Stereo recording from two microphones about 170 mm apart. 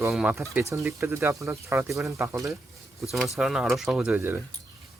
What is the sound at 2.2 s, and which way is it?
Speech, 15° right (ahead or behind).